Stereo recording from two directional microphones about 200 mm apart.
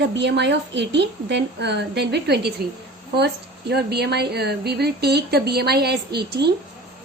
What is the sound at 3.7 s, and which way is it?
A woman's voice, 55° right (ahead or behind).